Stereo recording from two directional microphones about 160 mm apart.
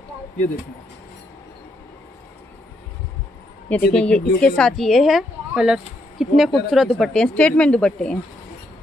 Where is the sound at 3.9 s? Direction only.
5° left (ahead or behind).